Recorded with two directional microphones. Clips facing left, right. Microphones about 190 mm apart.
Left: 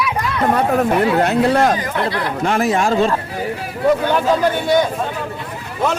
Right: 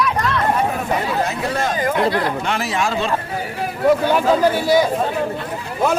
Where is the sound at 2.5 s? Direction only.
45° left (ahead or behind).